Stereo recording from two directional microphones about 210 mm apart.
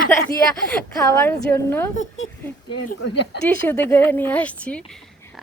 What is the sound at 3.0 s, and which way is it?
Speech, 55° left (ahead or behind).